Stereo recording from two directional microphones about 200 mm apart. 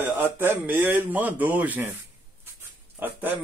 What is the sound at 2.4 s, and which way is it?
Dog, 10° right (ahead or behind).